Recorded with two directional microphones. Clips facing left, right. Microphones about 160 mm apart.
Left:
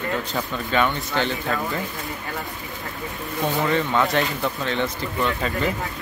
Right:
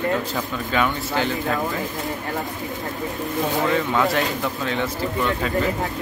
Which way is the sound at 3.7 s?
5° right (ahead or behind).